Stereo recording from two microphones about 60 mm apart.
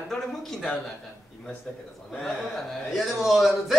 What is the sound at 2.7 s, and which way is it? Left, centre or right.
A man's voice, centre.